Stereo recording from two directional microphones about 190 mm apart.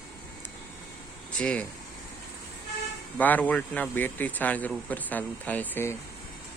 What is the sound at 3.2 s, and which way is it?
A man's voice, 10° left (ahead or behind).